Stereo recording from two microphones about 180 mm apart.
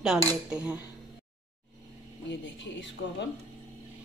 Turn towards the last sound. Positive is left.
turn(degrees=90)